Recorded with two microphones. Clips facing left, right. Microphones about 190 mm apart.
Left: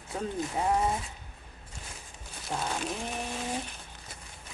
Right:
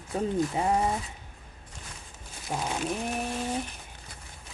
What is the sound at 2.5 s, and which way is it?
Speech, 10° right (ahead or behind).